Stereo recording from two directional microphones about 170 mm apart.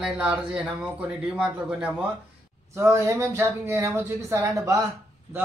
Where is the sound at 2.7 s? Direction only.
15° right (ahead or behind).